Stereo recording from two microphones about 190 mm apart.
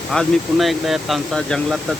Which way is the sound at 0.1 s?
Centre (ahead or behind).